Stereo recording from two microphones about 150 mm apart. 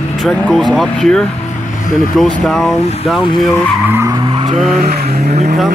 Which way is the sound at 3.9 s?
15° right (ahead or behind).